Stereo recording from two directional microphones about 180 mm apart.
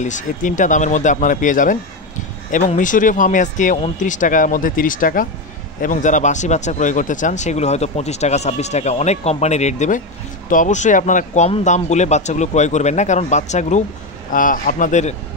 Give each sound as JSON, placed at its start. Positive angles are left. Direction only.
{"t": 0.0, "sound": "speech", "side_deg": 45}